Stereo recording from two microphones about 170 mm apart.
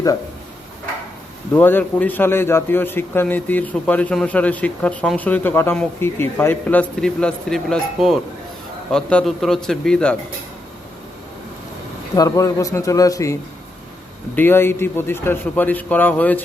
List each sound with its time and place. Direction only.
1.5 s a man's voice: 10° left (ahead or behind)
12.1 s a man's voice: 20° left (ahead or behind)
14.3 s a man's voice: 15° left (ahead or behind)